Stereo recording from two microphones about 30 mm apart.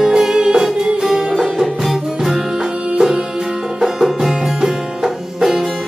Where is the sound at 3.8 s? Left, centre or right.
Centre.